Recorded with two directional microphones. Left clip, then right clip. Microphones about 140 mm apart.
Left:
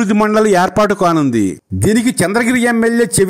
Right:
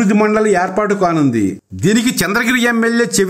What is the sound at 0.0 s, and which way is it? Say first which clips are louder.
A man's voice: left 1 dB; 55° left (ahead or behind).